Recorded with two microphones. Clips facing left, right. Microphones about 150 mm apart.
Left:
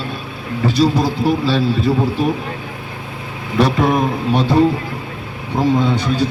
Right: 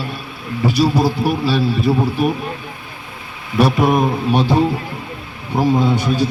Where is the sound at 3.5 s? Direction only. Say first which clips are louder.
Right 1 dB; 10° right (ahead or behind).